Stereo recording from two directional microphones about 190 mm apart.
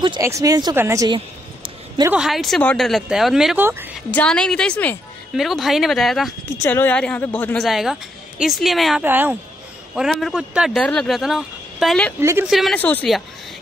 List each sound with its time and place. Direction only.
0.0 s speech: 20° right (ahead or behind)
2.1 s a woman's voice: centre (ahead or behind)
4.1 s a woman's voice: 5° left (ahead or behind)
6.6 s a woman's voice: 10° left (ahead or behind)
12.2 s a woman's voice: 15° right (ahead or behind)
12.4 s a woman's voice: centre (ahead or behind)